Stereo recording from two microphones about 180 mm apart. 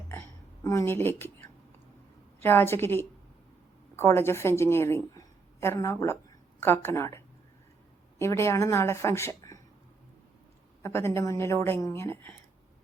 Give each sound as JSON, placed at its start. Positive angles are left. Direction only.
{"t": 0.6, "sound": "a woman's voice", "side_deg": 15}
{"t": 8.2, "sound": "a woman's voice", "side_deg": 15}
{"t": 10.8, "sound": "a woman's voice", "side_deg": 15}